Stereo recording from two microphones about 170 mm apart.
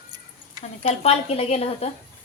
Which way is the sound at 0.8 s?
35° left (ahead or behind).